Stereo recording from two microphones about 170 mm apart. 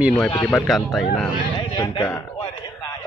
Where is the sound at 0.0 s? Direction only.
Centre (ahead or behind).